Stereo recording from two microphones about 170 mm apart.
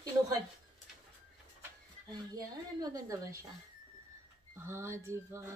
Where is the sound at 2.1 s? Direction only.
20° right (ahead or behind).